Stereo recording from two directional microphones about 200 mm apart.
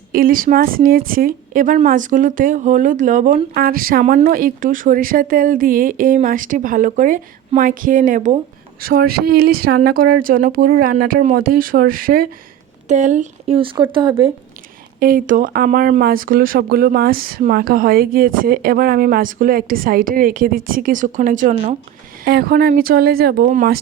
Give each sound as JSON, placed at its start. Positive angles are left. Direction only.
{"t": 0.1, "sound": "a woman's voice", "side_deg": -45}
{"t": 13.9, "sound": "speech", "side_deg": -20}
{"t": 14.9, "sound": "a woman's voice", "side_deg": -45}